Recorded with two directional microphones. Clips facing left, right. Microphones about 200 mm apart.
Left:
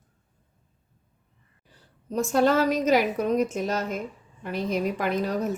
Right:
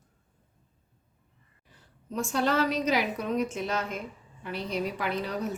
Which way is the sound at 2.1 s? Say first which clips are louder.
Left 6 dB; 45° left (ahead or behind).